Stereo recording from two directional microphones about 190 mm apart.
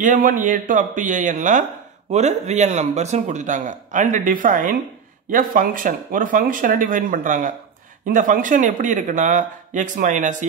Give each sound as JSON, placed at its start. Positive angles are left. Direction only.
{"t": 0.0, "sound": "speech", "side_deg": -45}